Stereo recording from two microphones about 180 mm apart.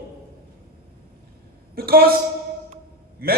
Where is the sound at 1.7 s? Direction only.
55° right (ahead or behind).